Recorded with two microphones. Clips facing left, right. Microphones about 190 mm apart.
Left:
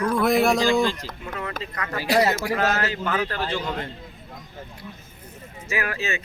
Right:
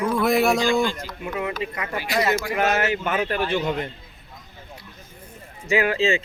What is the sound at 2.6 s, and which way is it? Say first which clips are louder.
Speech: right 2 dB; 20° right (ahead or behind).